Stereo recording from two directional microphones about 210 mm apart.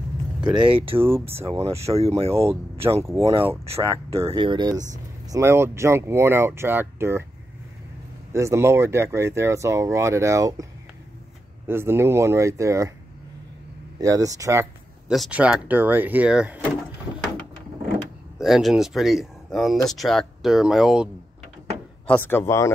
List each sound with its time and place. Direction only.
0.7 s speech: 25° right (ahead or behind)
1.0 s speech: 10° right (ahead or behind)
1.4 s speech: 30° right (ahead or behind); by 7.2 s 10° right (ahead or behind)
8.3 s speech: 15° right (ahead or behind)
13.9 s speech: 15° right (ahead or behind)
18.4 s speech: centre (ahead or behind)
22.0 s speech: 10° left (ahead or behind)